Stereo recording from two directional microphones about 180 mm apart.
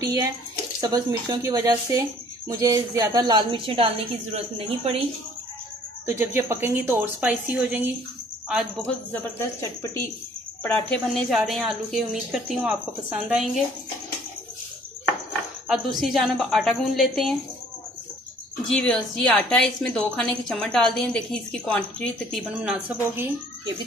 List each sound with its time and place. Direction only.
0.0 s speech: 20° right (ahead or behind)
6.0 s a woman's voice: 15° right (ahead or behind)
8.8 s a woman's voice: 10° left (ahead or behind)
15.7 s a woman's voice: centre (ahead or behind)
18.7 s a woman's voice: 5° left (ahead or behind)
22.6 s a woman's voice: 5° right (ahead or behind)